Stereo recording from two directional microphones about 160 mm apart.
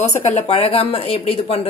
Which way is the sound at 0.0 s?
45° left (ahead or behind).